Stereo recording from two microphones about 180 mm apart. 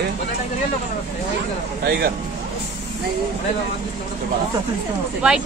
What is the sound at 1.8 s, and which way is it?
Speech, 55° right (ahead or behind).